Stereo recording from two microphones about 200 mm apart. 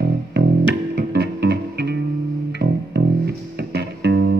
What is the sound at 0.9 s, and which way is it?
Music, 55° right (ahead or behind).